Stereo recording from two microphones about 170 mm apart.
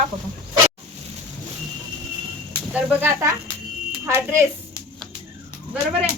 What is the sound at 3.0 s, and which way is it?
A woman's voice, 15° right (ahead or behind).